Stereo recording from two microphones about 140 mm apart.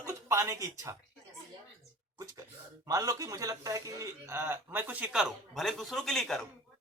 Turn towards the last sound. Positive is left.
turn(degrees=5)  # may be behind; listen again after turning